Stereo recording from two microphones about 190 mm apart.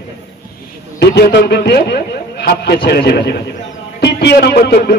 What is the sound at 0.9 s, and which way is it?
A man's voice, 60° left (ahead or behind).